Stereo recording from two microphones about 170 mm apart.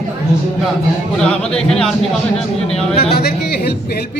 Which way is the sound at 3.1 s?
65° left (ahead or behind).